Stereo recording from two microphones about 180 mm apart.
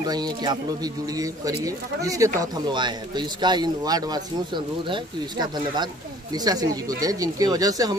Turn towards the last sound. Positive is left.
turn(degrees=-20)  # may be behind; listen again after turning